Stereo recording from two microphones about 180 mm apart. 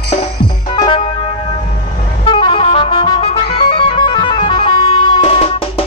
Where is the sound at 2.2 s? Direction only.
30° left (ahead or behind).